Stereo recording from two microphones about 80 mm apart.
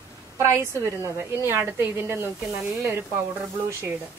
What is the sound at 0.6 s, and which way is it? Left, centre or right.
A woman's voice, right.